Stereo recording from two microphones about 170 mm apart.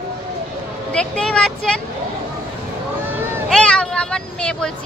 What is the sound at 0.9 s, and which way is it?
Speech, 5° left (ahead or behind).